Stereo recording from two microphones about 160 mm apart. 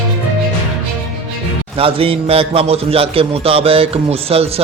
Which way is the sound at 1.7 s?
35° right (ahead or behind).